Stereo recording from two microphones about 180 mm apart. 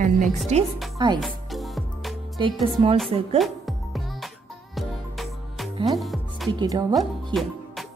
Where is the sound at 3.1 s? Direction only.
35° right (ahead or behind).